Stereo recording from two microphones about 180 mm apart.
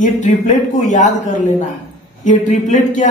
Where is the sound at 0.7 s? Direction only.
45° left (ahead or behind).